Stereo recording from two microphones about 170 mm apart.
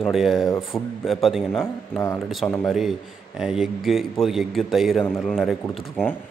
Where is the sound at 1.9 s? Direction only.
15° left (ahead or behind).